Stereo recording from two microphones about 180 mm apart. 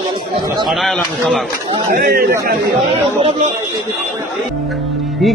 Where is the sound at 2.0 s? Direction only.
55° right (ahead or behind).